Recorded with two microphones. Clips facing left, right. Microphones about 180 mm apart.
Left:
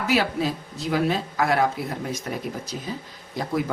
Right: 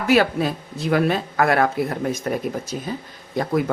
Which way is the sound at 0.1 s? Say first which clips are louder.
Right 6 dB; 55° right (ahead or behind).